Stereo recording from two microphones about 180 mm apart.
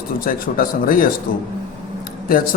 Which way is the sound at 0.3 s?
50° left (ahead or behind).